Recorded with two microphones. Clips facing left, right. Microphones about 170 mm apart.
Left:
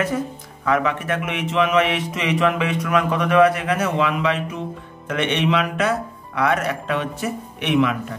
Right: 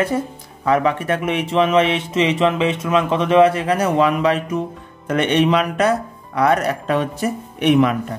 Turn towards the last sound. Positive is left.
turn(degrees=-40)  # may be behind; listen again after turning